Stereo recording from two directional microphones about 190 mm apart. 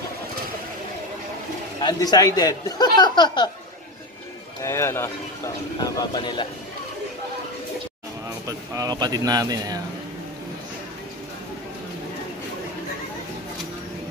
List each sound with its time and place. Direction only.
1.8 s speech: 20° left (ahead or behind)
4.6 s speech: 15° left (ahead or behind)
8.5 s speech: 20° right (ahead or behind)